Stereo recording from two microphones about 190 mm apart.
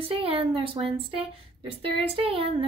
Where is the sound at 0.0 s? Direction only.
30° right (ahead or behind).